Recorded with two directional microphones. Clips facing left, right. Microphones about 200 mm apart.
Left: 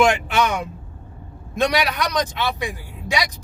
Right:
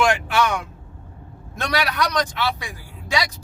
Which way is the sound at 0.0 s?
20° left (ahead or behind).